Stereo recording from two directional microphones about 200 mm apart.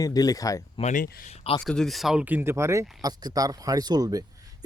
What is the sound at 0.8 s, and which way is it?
Speech, 40° left (ahead or behind).